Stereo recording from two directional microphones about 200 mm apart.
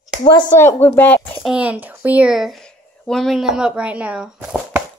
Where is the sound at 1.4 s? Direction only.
5° right (ahead or behind).